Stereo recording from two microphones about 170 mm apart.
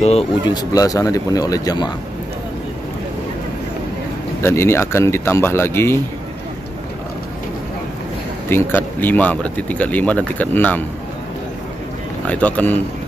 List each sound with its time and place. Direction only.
0.5 s speech: 20° left (ahead or behind)
4.4 s speech: 15° left (ahead or behind)
8.5 s speech: 10° left (ahead or behind)
12.3 s speech: 10° left (ahead or behind)